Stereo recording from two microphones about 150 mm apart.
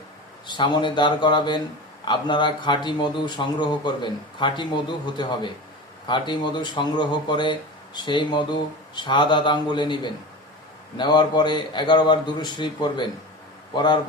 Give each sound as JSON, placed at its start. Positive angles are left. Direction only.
{"t": 0.4, "sound": "speech", "side_deg": 30}